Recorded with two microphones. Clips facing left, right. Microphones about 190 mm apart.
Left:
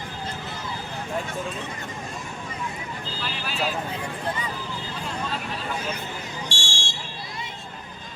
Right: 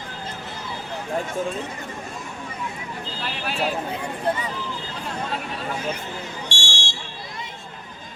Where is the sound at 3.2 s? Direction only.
60° right (ahead or behind).